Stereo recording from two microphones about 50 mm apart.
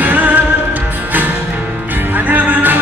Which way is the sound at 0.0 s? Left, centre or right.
Right.